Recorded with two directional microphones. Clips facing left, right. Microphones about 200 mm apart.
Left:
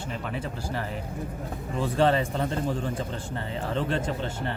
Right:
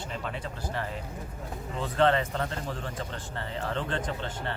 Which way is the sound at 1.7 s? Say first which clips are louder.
Left 2 dB; 10° left (ahead or behind).